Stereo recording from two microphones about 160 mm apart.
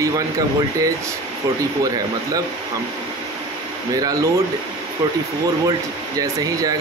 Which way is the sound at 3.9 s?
20° right (ahead or behind).